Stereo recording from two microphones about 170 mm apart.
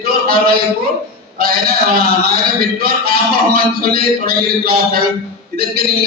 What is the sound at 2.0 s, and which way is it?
A man's voice, 60° right (ahead or behind).